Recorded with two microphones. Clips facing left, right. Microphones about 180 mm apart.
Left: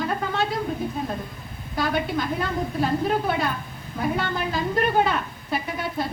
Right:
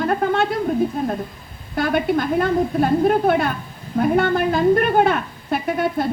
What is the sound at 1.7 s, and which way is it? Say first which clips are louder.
A woman's voice: right 6 dB; 55° right (ahead or behind).